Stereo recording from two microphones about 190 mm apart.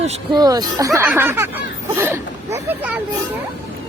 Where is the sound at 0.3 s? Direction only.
20° right (ahead or behind).